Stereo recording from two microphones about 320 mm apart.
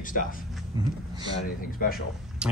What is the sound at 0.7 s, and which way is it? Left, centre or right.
Speech, centre.